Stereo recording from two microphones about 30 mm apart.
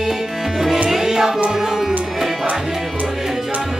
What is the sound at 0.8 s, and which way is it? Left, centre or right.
Music, centre.